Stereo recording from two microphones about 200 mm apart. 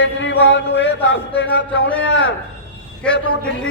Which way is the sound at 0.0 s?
65° left (ahead or behind).